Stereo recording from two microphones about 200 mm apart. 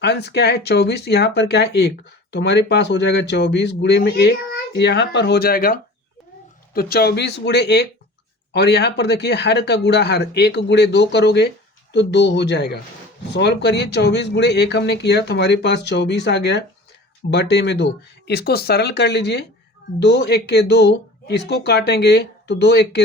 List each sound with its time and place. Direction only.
0.0 s speech: 55° left (ahead or behind)